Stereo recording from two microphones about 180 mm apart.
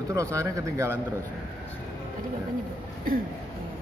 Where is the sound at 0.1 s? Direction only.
15° right (ahead or behind).